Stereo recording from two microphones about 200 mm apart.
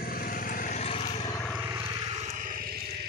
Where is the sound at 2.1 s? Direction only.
35° right (ahead or behind).